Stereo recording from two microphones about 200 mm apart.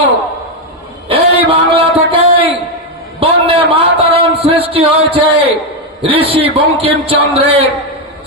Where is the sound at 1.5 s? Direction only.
30° right (ahead or behind).